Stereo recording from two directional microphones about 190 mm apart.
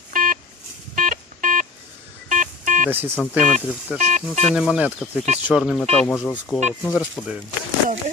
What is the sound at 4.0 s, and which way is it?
Speech, 40° right (ahead or behind).